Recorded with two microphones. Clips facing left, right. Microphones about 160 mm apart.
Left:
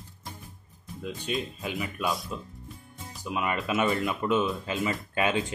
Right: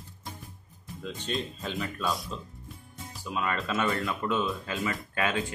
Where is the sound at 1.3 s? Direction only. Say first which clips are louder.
Left 1 dB; 10° left (ahead or behind).